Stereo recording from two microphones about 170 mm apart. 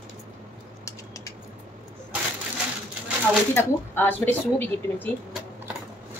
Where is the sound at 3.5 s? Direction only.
10° left (ahead or behind).